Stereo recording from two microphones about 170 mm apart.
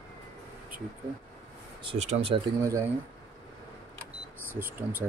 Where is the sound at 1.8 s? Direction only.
40° right (ahead or behind).